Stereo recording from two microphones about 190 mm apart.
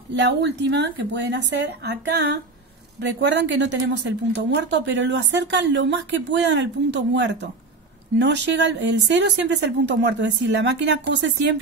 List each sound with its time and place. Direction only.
0.1 s a woman's voice: 65° right (ahead or behind)